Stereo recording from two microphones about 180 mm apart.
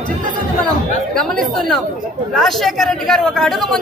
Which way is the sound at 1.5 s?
Centre (ahead or behind).